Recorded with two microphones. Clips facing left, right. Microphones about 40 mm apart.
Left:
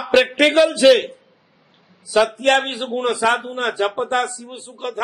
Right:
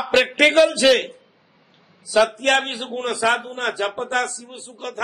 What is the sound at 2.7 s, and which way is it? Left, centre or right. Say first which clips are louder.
A man's voice: left 4 dB; left.